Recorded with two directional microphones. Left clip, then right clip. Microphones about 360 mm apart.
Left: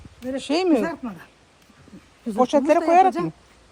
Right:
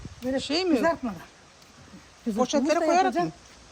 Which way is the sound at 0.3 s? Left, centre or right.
Centre.